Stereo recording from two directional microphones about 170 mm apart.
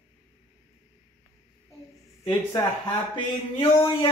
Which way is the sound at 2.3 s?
20° left (ahead or behind).